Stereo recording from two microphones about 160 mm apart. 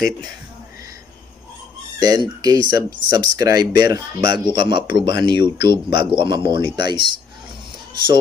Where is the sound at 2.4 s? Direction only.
25° right (ahead or behind).